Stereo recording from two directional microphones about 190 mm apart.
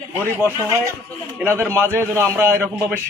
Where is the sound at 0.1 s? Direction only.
10° right (ahead or behind).